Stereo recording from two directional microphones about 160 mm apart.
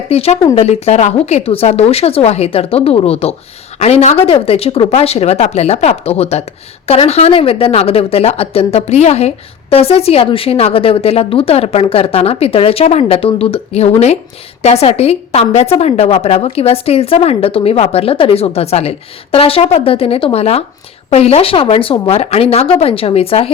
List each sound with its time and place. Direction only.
0.1 s speech: 40° left (ahead or behind)